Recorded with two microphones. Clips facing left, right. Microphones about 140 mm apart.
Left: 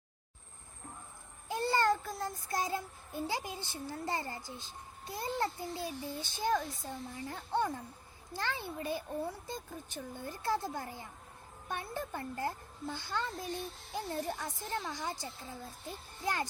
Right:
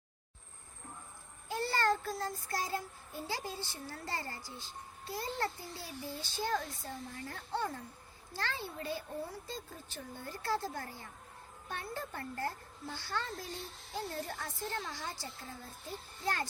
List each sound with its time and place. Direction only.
1.5 s child singing: 20° left (ahead or behind)
8.4 s speech: 15° left (ahead or behind)
11.7 s child singing: 20° left (ahead or behind)
16.2 s speech: 15° left (ahead or behind)